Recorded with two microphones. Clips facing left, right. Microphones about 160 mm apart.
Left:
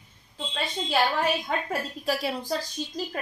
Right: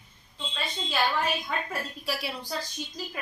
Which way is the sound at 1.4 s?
40° left (ahead or behind).